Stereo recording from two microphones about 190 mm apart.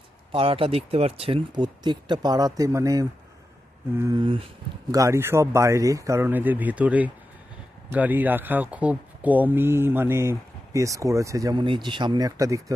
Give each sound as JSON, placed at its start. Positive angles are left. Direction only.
{"t": 0.3, "sound": "speech", "side_deg": -30}
{"t": 4.9, "sound": "speech", "side_deg": -15}